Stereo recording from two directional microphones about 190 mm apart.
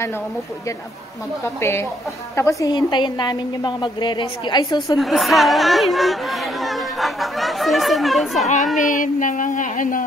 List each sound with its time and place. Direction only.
1.6 s a woman's voice: 15° left (ahead or behind)
4.9 s speech: centre (ahead or behind)
8.7 s speech: 40° left (ahead or behind)